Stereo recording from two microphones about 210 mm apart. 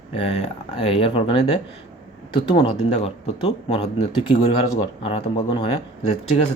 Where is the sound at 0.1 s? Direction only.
30° left (ahead or behind).